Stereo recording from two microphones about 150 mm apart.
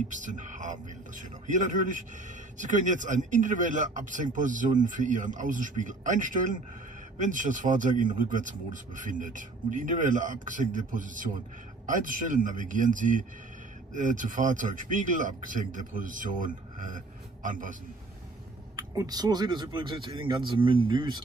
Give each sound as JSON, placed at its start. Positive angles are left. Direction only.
{"t": 0.1, "sound": "a man's voice", "side_deg": -55}
{"t": 18.8, "sound": "speech", "side_deg": -25}